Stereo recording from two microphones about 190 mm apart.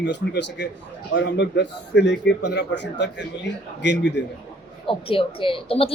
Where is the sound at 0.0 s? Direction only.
65° left (ahead or behind).